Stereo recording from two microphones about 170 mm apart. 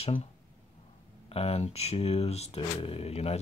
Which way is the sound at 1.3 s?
35° left (ahead or behind).